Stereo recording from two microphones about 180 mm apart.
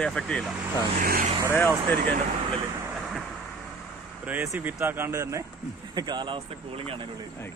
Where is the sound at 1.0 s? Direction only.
55° right (ahead or behind).